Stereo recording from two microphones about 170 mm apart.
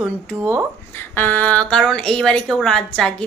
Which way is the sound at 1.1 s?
10° left (ahead or behind).